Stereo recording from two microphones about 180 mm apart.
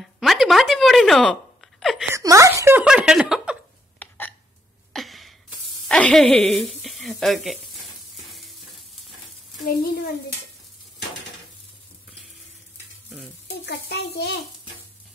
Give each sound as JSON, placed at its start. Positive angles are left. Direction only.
{"t": 0.0, "sound": "a sound", "side_deg": 0}
{"t": 2.1, "sound": "speech", "side_deg": -15}
{"t": 4.0, "sound": "hiccup", "side_deg": 10}
{"t": 4.9, "sound": "a sound", "side_deg": 0}
{"t": 5.9, "sound": "speech", "side_deg": 5}
{"t": 8.2, "sound": "sizzle", "side_deg": 0}
{"t": 13.7, "sound": "a child's voice", "side_deg": 65}